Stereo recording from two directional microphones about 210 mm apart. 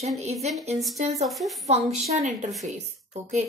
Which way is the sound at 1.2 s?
Centre (ahead or behind).